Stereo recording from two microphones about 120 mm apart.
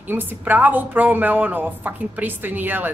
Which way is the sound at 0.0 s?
15° right (ahead or behind).